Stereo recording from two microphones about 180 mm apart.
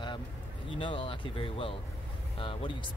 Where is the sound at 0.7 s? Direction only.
30° left (ahead or behind).